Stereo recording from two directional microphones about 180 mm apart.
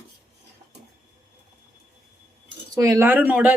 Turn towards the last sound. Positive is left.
turn(degrees=-10)  # may be behind; listen again after turning